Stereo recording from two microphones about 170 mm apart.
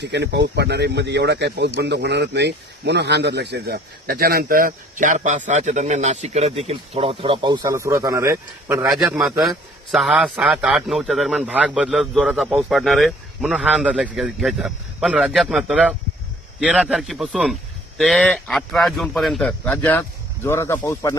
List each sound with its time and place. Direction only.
0.0 s speech: 90° right; by 8.9 s 15° right (ahead or behind)
9.0 s a man's voice: 5° right (ahead or behind); by 21.2 s 15° left (ahead or behind)